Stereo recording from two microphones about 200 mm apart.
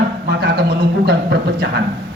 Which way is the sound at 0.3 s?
55° right (ahead or behind).